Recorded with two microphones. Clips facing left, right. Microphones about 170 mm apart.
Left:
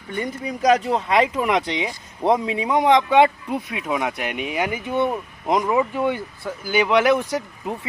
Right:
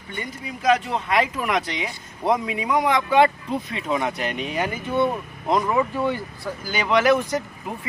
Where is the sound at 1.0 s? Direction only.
20° left (ahead or behind).